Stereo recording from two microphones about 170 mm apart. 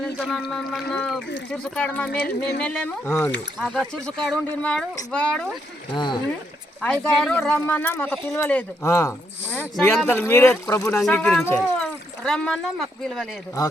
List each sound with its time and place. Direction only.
0.0 s speech: centre (ahead or behind)
2.1 s yodeling: 70° left (ahead or behind)
2.6 s speech: 10° left (ahead or behind)
5.9 s speech: 25° left (ahead or behind)
6.8 s speech: 5° left (ahead or behind)